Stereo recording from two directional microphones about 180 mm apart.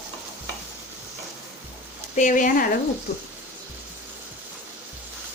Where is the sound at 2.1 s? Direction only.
45° left (ahead or behind).